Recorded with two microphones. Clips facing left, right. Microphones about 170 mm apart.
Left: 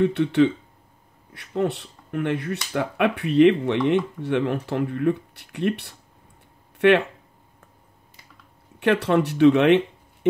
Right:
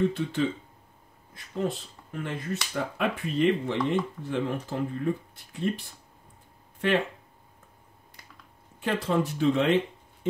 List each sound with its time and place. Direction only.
0.0 s speech: 70° left (ahead or behind)
8.7 s speech: 70° left (ahead or behind)